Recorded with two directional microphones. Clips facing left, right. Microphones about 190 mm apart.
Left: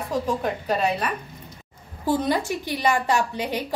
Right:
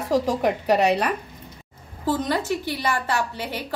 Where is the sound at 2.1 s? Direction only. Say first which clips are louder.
Left 1 dB; 15° left (ahead or behind).